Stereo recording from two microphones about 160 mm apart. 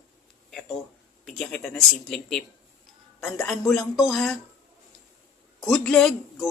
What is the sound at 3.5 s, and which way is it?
Speech, centre (ahead or behind).